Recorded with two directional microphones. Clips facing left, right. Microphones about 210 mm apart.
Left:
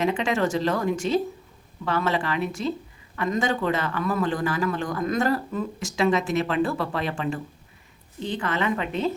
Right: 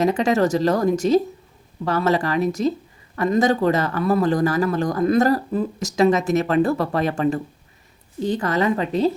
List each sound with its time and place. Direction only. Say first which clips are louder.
0.0 s a man's voice: right 5 dB; 40° right (ahead or behind)